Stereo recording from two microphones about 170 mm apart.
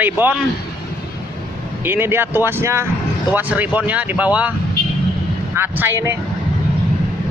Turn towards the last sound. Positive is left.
turn(degrees=-15)  # may be behind; listen again after turning